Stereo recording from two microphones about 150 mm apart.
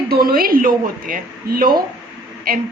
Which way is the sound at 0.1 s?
80° right.